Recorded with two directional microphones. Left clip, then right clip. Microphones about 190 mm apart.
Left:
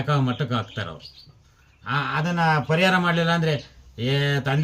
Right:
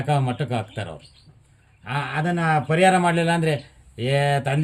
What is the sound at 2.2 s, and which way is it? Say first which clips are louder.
Speech: right 2 dB; 15° right (ahead or behind).